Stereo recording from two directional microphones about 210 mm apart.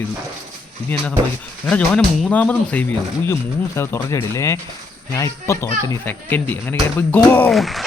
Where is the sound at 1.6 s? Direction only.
5° left (ahead or behind).